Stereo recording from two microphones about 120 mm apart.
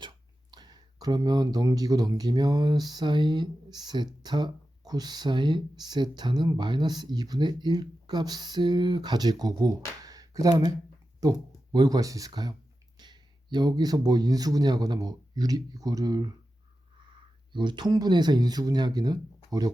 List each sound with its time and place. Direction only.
0.5 s speech: 35° right (ahead or behind)